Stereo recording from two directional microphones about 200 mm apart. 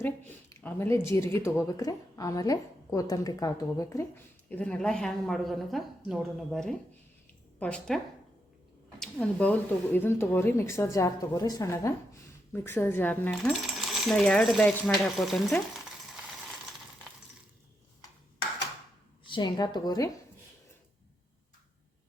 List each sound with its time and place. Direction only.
0.5 s speech: 15° left (ahead or behind)
19.2 s a woman's voice: 25° left (ahead or behind)